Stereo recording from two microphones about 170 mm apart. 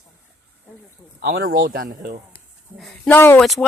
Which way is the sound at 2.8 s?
5° left (ahead or behind).